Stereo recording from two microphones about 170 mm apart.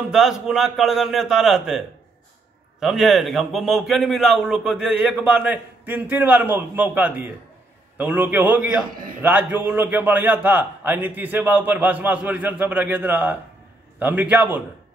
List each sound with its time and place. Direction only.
0.1 s a man's voice: 5° right (ahead or behind)
2.8 s a man's voice: centre (ahead or behind)